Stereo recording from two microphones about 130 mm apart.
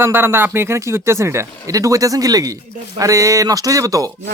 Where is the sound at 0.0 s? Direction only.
20° right (ahead or behind).